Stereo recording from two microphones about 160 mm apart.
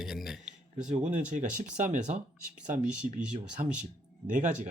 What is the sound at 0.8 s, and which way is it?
Speech, 50° right (ahead or behind).